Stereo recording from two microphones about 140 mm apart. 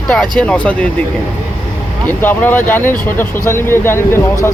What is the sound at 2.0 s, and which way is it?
Speech, 15° left (ahead or behind).